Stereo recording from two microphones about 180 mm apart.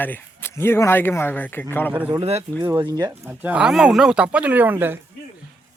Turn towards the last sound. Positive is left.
turn(degrees=-10)  # may be behind; listen again after turning